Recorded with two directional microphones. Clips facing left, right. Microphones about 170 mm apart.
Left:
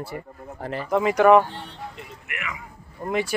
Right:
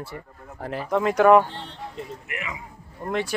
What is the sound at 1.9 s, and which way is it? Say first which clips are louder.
Vehicle: right 4 dB; 30° right (ahead or behind).